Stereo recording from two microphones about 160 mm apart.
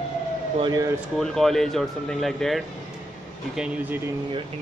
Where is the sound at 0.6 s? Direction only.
25° right (ahead or behind).